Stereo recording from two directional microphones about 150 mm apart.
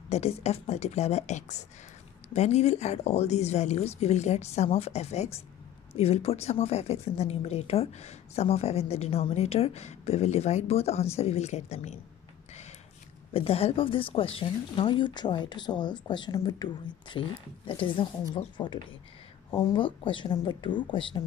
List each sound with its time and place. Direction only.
0.1 s speech: 45° left (ahead or behind)
13.3 s speech: 40° left (ahead or behind)